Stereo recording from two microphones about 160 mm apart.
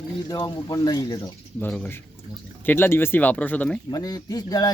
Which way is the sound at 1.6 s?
10° left (ahead or behind).